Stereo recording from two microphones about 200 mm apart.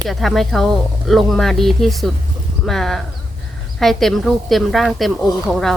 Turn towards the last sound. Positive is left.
turn(degrees=0)  # may be behind; listen again after turning